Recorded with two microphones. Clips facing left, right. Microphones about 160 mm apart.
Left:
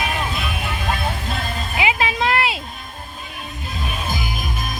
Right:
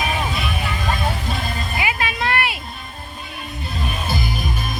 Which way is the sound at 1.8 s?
25° left (ahead or behind).